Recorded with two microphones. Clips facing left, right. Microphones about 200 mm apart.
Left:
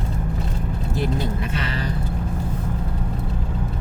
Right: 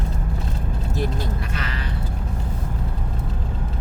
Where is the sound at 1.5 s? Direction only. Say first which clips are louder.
Left 4 dB; 30° left (ahead or behind).